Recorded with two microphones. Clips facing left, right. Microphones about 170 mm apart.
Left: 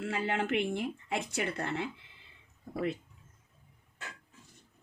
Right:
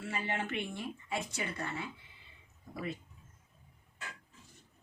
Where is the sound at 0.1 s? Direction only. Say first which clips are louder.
Left 5 dB; 85° left.